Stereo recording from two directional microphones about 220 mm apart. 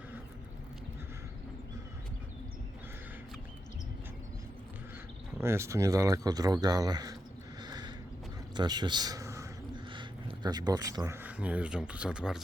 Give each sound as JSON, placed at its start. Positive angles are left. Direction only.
{"t": 5.4, "sound": "speech", "side_deg": -10}
{"t": 7.6, "sound": "a sound", "side_deg": -20}
{"t": 8.5, "sound": "a man's voice", "side_deg": -20}